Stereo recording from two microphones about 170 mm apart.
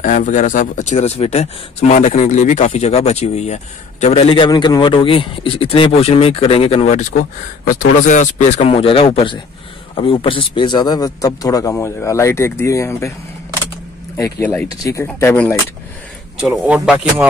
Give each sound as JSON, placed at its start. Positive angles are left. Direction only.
{"t": 0.0, "sound": "speech", "side_deg": 50}
{"t": 7.6, "sound": "speech", "side_deg": 50}
{"t": 14.1, "sound": "speech", "side_deg": 15}
{"t": 16.3, "sound": "speech", "side_deg": -5}